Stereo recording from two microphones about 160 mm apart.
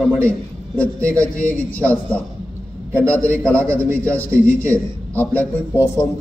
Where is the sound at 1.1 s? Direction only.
10° left (ahead or behind).